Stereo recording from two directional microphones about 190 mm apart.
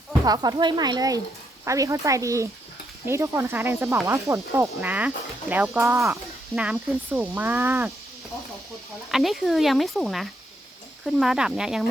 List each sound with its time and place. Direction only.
0.3 s a woman's voice: 20° right (ahead or behind)
9.1 s speech: centre (ahead or behind)